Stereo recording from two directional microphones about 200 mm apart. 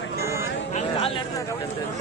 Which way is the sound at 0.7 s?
25° left (ahead or behind).